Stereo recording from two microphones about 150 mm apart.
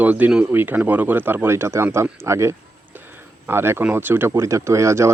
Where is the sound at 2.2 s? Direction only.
20° right (ahead or behind).